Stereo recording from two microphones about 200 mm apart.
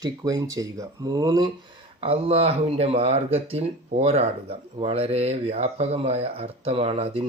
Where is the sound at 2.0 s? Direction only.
30° right (ahead or behind).